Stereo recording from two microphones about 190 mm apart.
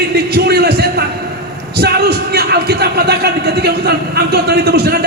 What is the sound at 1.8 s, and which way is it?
A man's voice, 55° right (ahead or behind).